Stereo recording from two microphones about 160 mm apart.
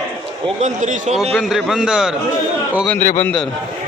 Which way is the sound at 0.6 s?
50° right (ahead or behind).